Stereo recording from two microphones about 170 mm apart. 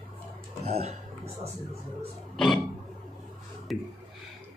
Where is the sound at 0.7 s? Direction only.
40° right (ahead or behind).